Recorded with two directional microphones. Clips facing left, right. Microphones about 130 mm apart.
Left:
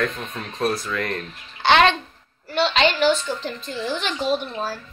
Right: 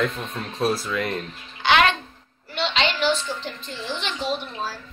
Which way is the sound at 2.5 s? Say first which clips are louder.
Left 5 dB; 40° left (ahead or behind).